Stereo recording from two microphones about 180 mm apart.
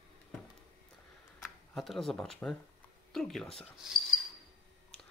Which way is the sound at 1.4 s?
Centre (ahead or behind).